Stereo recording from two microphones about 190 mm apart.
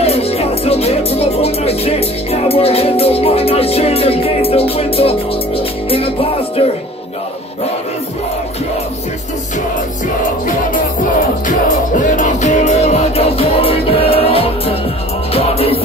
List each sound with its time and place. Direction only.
0.0 s music: 35° left (ahead or behind)
11.4 s music: 45° left (ahead or behind)